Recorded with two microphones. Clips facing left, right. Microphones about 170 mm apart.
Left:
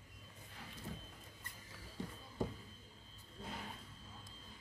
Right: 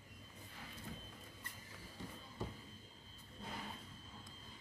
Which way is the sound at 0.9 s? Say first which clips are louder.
Left 3 dB; 30° left (ahead or behind).